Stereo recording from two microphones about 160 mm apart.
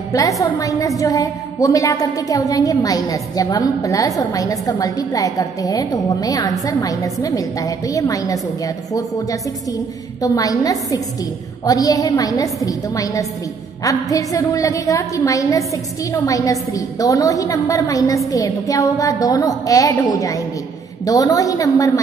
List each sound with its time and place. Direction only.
0.1 s a woman's voice: 20° left (ahead or behind)